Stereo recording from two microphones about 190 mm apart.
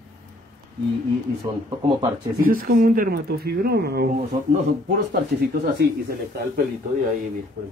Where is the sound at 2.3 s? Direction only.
50° right (ahead or behind).